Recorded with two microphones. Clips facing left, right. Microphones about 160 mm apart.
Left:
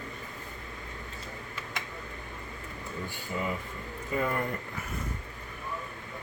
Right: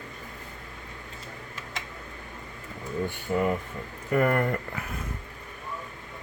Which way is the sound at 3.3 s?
60° right (ahead or behind).